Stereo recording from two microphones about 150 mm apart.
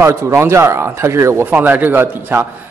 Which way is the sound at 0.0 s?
15° right (ahead or behind).